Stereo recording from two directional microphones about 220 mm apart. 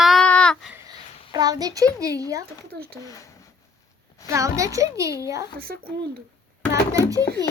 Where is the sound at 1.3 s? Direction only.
15° right (ahead or behind).